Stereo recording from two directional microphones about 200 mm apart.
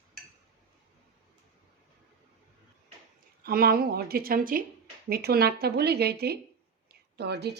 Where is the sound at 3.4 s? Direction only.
50° right (ahead or behind).